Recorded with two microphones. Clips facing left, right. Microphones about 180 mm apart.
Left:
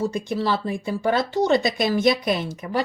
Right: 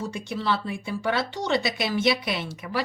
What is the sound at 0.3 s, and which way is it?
Speech, 40° left (ahead or behind).